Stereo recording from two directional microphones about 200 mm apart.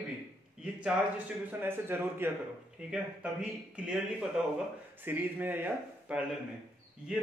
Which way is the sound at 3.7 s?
5° right (ahead or behind).